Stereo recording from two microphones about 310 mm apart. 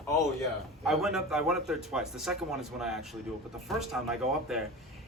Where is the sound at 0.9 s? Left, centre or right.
Centre.